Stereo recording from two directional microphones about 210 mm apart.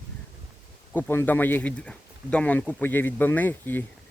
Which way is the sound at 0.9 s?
10° left (ahead or behind).